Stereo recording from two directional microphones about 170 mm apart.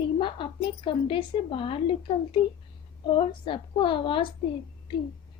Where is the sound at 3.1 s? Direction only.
30° left (ahead or behind).